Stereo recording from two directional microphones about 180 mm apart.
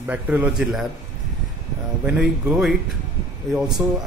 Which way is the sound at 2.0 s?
5° right (ahead or behind).